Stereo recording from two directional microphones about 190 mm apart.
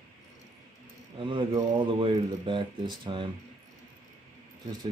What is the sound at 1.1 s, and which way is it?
Speech, 25° right (ahead or behind).